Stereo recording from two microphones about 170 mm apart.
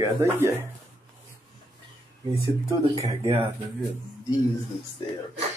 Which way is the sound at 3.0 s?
15° right (ahead or behind).